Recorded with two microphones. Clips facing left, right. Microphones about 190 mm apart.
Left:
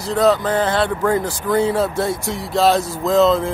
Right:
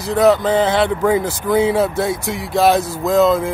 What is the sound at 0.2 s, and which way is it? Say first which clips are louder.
Speech: right 3 dB; 15° right (ahead or behind).